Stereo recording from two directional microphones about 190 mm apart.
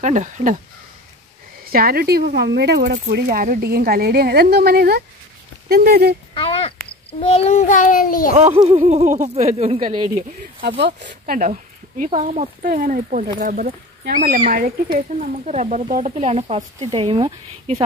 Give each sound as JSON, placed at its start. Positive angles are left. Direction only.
{"t": 0.0, "sound": "speech", "side_deg": -40}
{"t": 1.6, "sound": "speech", "side_deg": -50}
{"t": 6.3, "sound": "a sound", "side_deg": 30}
{"t": 7.1, "sound": "a child's voice", "side_deg": 30}
{"t": 8.4, "sound": "speech", "side_deg": -35}